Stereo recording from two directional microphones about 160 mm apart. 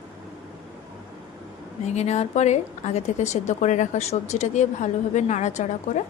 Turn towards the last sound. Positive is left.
turn(degrees=45)  # may be behind; listen again after turning